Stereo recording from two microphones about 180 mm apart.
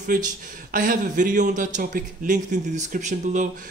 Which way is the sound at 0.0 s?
45° right (ahead or behind).